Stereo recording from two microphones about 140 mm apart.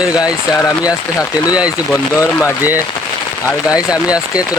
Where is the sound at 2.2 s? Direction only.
20° left (ahead or behind).